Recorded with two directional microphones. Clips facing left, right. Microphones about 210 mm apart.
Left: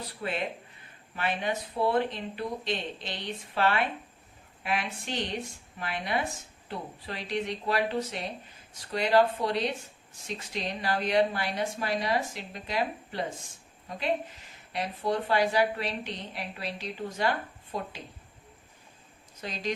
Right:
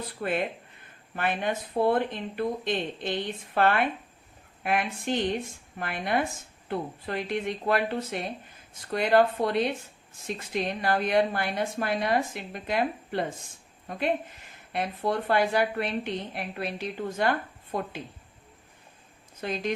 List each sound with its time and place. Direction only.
0.0 s a woman's voice: 50° right (ahead or behind)
19.4 s speech: 55° right (ahead or behind)